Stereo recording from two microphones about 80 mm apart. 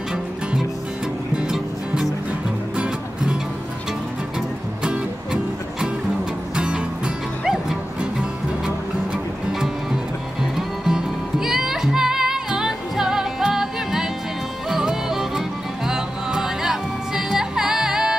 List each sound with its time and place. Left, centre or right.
1.3 s music: centre
4.4 s music: centre
10.9 s music: centre